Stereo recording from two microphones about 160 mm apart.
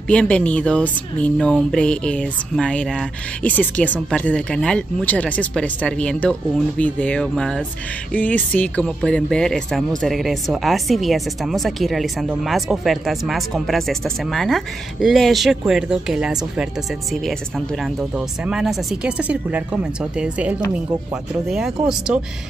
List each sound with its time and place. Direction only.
0.1 s speech: 5° left (ahead or behind)